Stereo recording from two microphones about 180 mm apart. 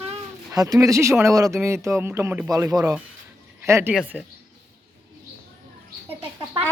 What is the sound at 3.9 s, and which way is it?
Speech, 5° right (ahead or behind).